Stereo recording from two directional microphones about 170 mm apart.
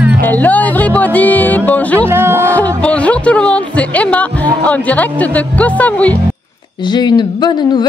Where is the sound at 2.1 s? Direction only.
15° right (ahead or behind).